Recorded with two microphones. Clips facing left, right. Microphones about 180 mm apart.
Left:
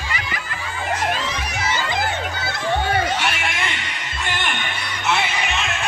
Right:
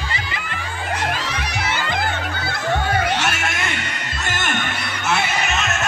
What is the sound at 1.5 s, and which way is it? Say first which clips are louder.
Music: even; 60° right (ahead or behind).